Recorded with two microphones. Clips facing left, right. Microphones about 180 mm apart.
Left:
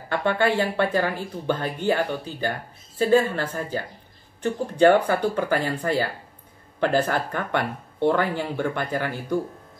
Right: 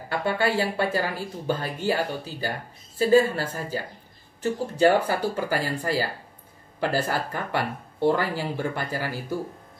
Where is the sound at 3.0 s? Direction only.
10° right (ahead or behind).